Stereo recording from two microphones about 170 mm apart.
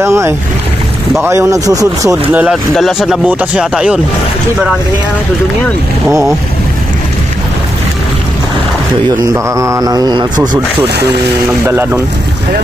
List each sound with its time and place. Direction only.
0.0 s speech: 15° right (ahead or behind)
2.3 s speech: 5° right (ahead or behind)
9.2 s speech: 20° right (ahead or behind)
11.6 s speech: 15° right (ahead or behind)